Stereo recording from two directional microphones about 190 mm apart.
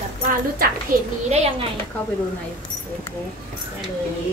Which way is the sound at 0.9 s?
50° right (ahead or behind).